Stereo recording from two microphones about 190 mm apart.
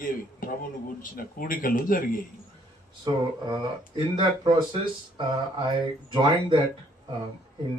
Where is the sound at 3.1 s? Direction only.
20° right (ahead or behind).